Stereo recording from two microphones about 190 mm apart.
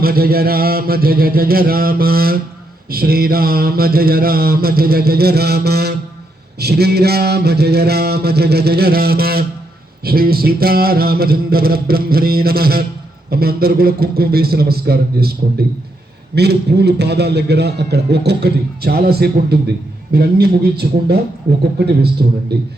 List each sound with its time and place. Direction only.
0.0 s mantra: 50° right (ahead or behind)
6.6 s a man's voice: 55° right (ahead or behind)
10.0 s mantra: 55° right (ahead or behind)
16.3 s a man's voice: 60° right (ahead or behind)
22.2 s a man's voice: 55° right (ahead or behind)